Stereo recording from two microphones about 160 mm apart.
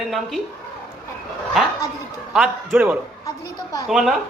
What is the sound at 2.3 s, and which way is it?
Speech, 5° right (ahead or behind).